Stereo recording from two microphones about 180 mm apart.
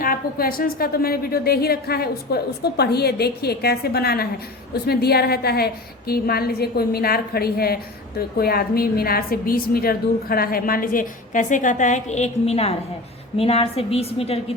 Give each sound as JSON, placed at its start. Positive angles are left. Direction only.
{"t": 0.0, "sound": "a woman's voice", "side_deg": 55}